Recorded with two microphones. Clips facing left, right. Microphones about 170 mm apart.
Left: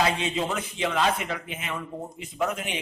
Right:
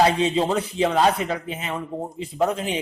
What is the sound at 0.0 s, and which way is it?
Speech, 35° right (ahead or behind).